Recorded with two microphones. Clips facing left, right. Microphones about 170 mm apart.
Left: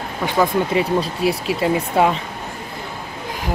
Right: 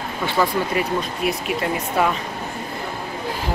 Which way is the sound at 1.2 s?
25° left (ahead or behind).